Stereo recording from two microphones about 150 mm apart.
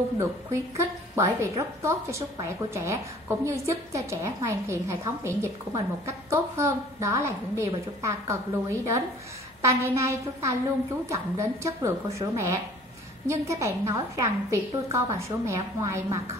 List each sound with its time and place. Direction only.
0.2 s a woman's voice: 20° right (ahead or behind)